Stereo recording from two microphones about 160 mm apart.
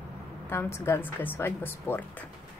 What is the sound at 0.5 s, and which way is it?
Speech, 15° left (ahead or behind).